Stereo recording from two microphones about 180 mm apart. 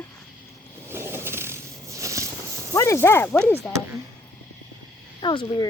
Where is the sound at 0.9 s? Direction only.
15° right (ahead or behind).